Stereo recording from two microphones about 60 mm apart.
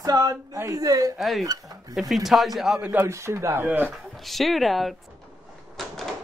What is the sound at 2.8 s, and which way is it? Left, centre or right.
Speech, right.